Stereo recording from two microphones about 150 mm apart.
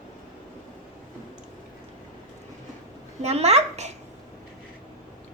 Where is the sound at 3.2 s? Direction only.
45° right (ahead or behind).